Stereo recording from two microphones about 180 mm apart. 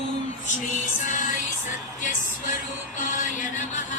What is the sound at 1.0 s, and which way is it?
Music, 45° left (ahead or behind).